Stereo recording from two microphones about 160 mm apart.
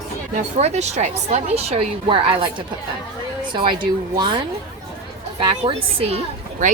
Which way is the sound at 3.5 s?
30° right (ahead or behind).